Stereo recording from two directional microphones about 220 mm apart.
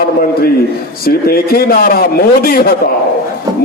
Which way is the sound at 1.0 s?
45° left (ahead or behind).